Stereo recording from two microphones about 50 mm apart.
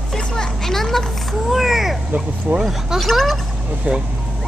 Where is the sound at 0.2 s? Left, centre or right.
Centre.